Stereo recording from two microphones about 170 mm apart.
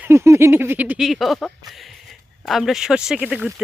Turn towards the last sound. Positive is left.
turn(degrees=-5)  # may be behind; listen again after turning